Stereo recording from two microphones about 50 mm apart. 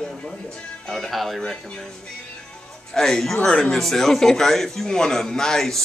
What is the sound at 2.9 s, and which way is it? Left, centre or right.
A man's voice, centre.